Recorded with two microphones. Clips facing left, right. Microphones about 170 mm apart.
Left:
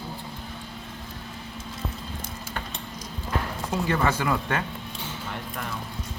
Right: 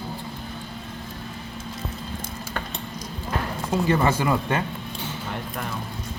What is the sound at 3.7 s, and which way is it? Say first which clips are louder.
Speech: right 4 dB; 25° right (ahead or behind).